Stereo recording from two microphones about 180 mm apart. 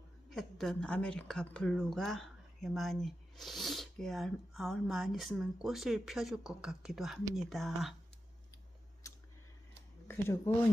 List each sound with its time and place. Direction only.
0.3 s a woman's voice: centre (ahead or behind)
9.0 s a sound: 20° left (ahead or behind)
10.0 s speech: 15° left (ahead or behind)